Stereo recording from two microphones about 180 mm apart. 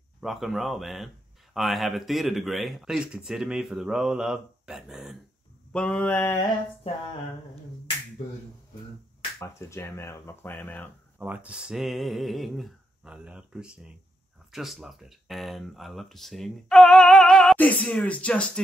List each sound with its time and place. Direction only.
0.2 s a man's voice: centre (ahead or behind)
9.4 s speech: 15° left (ahead or behind)
11.1 s a man's voice: 5° right (ahead or behind)